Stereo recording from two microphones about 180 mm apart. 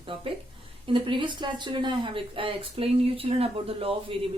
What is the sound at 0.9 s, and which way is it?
Speech, 30° right (ahead or behind).